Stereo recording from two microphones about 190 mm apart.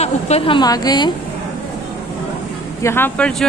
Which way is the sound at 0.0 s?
35° left (ahead or behind).